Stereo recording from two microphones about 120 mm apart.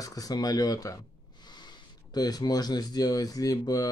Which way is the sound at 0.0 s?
30° left (ahead or behind).